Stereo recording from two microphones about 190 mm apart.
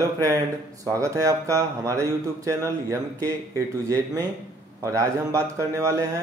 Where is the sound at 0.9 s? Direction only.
15° right (ahead or behind).